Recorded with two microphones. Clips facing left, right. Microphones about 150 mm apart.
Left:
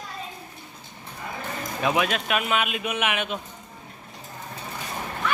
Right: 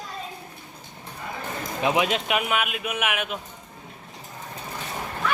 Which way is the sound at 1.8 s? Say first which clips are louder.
Right 1 dB; 20° right (ahead or behind).